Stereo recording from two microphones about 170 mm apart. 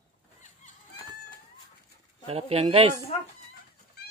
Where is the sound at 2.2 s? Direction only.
35° right (ahead or behind).